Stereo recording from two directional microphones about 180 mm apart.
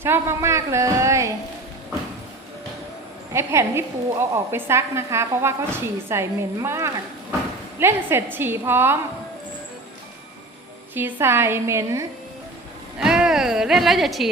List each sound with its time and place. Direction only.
0.0 s a woman's voice: 15° right (ahead or behind)
3.3 s a woman's voice: 15° right (ahead or behind)
10.9 s a woman's voice: 10° right (ahead or behind)
13.0 s a woman's voice: 5° right (ahead or behind)